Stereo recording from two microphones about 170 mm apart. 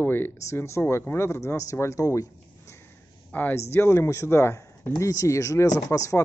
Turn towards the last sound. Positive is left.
turn(degrees=15)  # may be behind; listen again after turning